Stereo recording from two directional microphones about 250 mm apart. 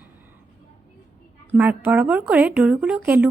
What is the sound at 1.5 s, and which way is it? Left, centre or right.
A woman's voice, centre.